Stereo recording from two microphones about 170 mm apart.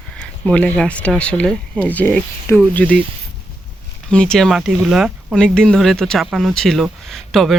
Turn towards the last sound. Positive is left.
turn(degrees=0)  # may be behind; listen again after turning